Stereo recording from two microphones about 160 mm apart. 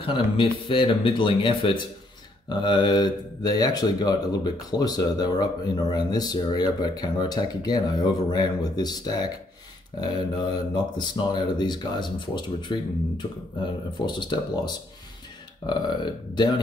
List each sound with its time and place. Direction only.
0.0 s speech: 30° left (ahead or behind)